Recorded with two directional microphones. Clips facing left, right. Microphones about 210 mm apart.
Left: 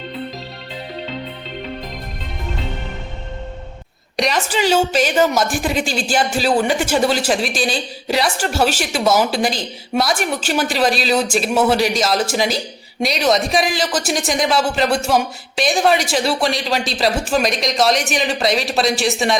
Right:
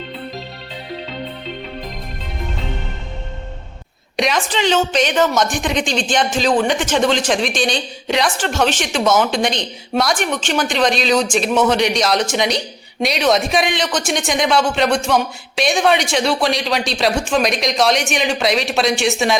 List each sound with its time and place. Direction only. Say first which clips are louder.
4.2 s a woman's voice: even; centre (ahead or behind)